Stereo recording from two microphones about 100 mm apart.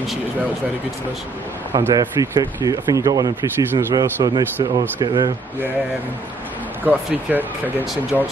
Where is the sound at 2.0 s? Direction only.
40° right (ahead or behind).